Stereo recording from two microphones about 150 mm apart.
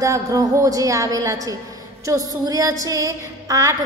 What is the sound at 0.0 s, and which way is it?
A woman's voice, 20° right (ahead or behind).